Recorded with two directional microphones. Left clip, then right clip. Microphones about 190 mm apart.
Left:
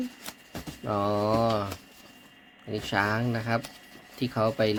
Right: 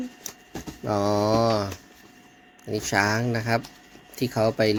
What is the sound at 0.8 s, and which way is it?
Mantra, 20° right (ahead or behind).